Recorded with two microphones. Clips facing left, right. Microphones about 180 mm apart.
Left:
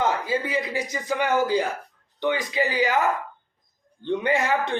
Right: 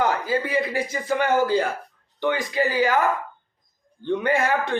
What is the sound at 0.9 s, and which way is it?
Speech, 15° left (ahead or behind).